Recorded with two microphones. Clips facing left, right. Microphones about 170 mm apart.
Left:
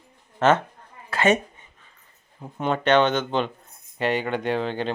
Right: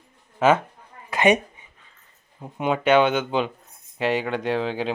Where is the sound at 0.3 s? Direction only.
10° right (ahead or behind).